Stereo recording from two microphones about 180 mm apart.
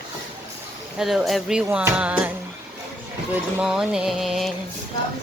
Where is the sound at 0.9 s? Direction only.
Centre (ahead or behind).